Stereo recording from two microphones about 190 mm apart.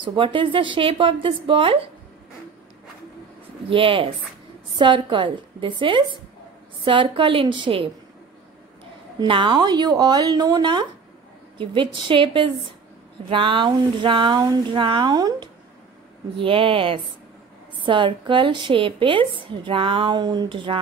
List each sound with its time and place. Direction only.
0.0 s a woman's voice: 25° right (ahead or behind)
3.7 s a woman's voice: 30° right (ahead or behind)
9.2 s a woman's voice: 25° right (ahead or behind)